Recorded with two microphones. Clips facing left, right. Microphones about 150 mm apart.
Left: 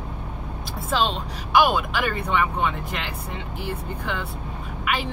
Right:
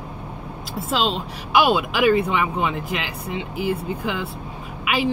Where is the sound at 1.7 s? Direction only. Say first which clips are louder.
Right 6 dB; 10° right (ahead or behind).